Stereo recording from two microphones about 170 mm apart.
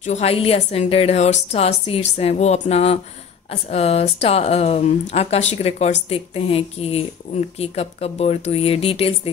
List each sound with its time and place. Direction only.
0.0 s speech: 40° left (ahead or behind)